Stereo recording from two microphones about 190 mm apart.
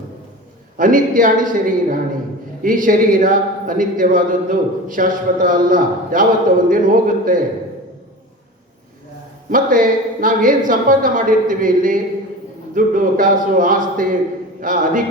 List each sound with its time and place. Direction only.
0.8 s speech: 45° right (ahead or behind)
9.5 s speech: 45° right (ahead or behind)